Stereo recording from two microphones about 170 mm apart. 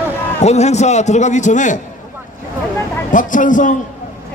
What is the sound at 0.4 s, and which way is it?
A man's voice, 40° left (ahead or behind).